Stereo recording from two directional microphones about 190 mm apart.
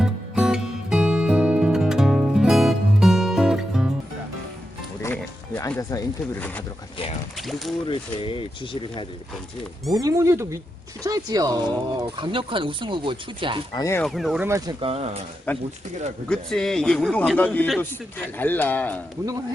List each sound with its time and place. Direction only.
0.0 s music: 5° right (ahead or behind)
5.0 s music: 15° left (ahead or behind)
7.3 s speech: centre (ahead or behind)
7.9 s speech: 25° left (ahead or behind)
9.9 s speech: 20° right (ahead or behind)
13.7 s a man's voice: 15° left (ahead or behind)
14.0 s speech: centre (ahead or behind)
14.4 s speech: 15° right (ahead or behind)
14.8 s speech: 30° right (ahead or behind)
15.5 s a man's voice: 10° left (ahead or behind)